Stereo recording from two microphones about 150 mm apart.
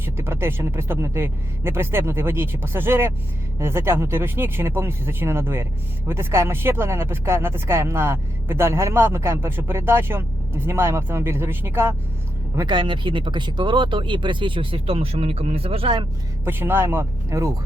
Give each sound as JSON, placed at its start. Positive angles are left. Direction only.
{"t": 0.0, "sound": "speech", "side_deg": -15}
{"t": 12.5, "sound": "speech", "side_deg": -30}
{"t": 16.5, "sound": "speech", "side_deg": -15}